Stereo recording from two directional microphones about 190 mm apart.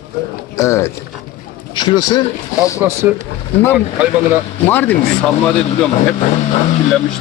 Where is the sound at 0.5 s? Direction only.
15° left (ahead or behind).